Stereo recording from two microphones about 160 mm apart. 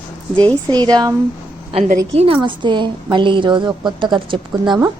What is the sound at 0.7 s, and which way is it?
Speech, 25° right (ahead or behind).